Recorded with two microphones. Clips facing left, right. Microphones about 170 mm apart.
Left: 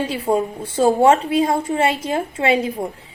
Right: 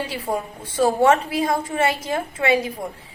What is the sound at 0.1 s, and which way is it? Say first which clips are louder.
A woman's voice: left 7 dB; 25° left (ahead or behind).